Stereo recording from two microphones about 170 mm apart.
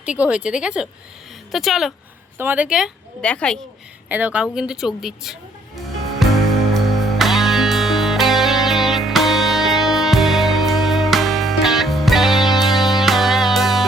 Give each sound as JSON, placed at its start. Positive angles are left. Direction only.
{"t": 0.0, "sound": "speech", "side_deg": -5}
{"t": 4.1, "sound": "speech", "side_deg": -10}
{"t": 6.2, "sound": "music", "side_deg": 0}